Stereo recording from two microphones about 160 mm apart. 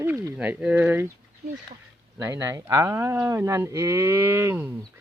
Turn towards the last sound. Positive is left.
turn(degrees=-15)  # may be behind; listen again after turning